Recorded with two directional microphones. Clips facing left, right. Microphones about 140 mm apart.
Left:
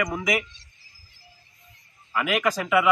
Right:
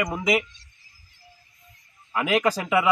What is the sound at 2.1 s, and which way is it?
Speech, 30° right (ahead or behind).